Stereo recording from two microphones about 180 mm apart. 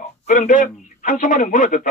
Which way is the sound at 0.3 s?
45° left (ahead or behind).